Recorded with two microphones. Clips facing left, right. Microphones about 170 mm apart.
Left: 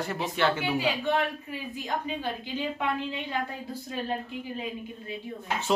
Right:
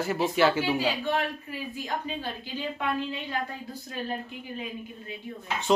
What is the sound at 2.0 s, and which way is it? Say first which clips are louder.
Speech: left 2 dB; 15° left (ahead or behind).